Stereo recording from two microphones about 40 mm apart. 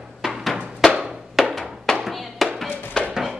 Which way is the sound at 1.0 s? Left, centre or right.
Centre.